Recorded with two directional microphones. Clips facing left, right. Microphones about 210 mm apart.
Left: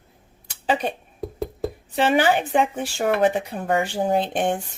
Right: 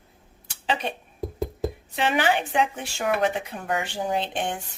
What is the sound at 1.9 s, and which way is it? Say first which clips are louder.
Speech: left 5 dB; 40° left (ahead or behind).